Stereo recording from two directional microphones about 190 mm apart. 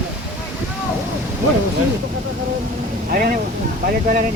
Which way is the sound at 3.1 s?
50° right (ahead or behind).